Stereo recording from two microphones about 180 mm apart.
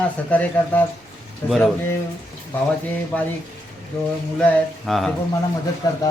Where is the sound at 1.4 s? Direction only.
15° left (ahead or behind).